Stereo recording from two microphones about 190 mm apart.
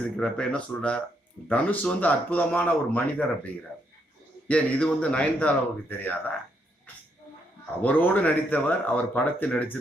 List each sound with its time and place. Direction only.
0.2 s a man's voice: 5° left (ahead or behind)
7.8 s a man's voice: 10° left (ahead or behind)